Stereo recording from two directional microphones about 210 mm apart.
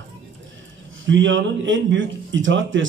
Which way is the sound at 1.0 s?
65° right (ahead or behind).